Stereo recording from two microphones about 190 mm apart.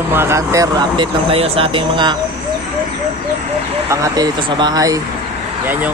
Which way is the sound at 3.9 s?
20° right (ahead or behind).